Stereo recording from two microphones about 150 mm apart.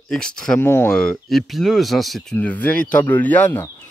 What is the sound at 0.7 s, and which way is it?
Speech, 15° left (ahead or behind).